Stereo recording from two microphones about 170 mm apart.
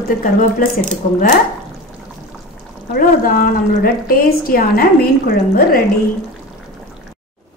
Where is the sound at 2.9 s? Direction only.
55° left (ahead or behind).